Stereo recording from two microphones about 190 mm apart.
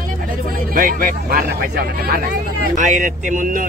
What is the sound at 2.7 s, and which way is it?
Speech, 40° right (ahead or behind).